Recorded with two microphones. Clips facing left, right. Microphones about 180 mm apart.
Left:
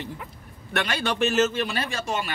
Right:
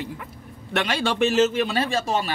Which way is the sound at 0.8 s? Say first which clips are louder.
Right 3 dB; 30° right (ahead or behind).